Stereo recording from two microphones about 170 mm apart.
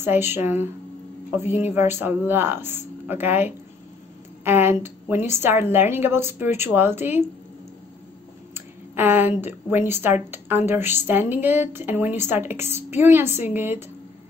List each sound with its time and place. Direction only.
0.0 s a woman's voice: 15° right (ahead or behind)
8.5 s a woman's voice: 10° right (ahead or behind)